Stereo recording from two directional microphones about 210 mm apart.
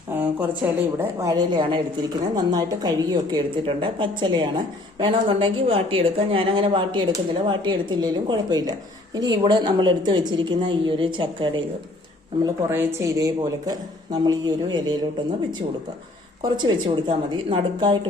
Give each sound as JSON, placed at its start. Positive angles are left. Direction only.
{"t": 0.1, "sound": "a sound", "side_deg": -10}
{"t": 1.2, "sound": "a woman's voice", "side_deg": -15}
{"t": 12.6, "sound": "a woman's voice", "side_deg": -15}
{"t": 16.4, "sound": "a woman's voice", "side_deg": -20}